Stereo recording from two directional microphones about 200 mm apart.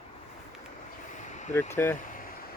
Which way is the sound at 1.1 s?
35° left (ahead or behind).